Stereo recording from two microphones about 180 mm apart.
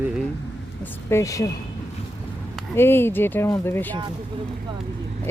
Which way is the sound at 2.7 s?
10° left (ahead or behind).